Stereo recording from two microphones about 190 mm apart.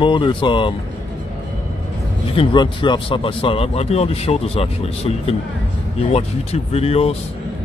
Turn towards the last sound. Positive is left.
turn(degrees=30)  # may be behind; listen again after turning